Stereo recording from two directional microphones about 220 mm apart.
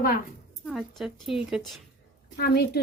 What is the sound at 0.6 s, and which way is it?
A woman's voice, centre (ahead or behind).